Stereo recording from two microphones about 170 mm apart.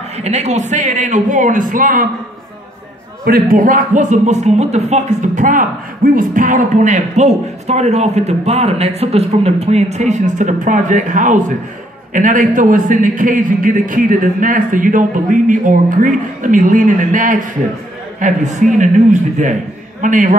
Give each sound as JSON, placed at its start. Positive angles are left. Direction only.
{"t": 0.2, "sound": "speech", "side_deg": -40}
{"t": 3.3, "sound": "speech", "side_deg": -55}